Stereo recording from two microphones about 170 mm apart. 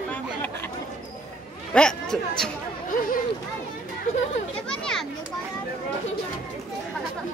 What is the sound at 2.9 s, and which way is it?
Chatter, 55° left (ahead or behind).